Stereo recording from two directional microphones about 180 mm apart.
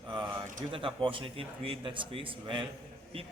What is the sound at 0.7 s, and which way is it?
A man's voice, 30° right (ahead or behind).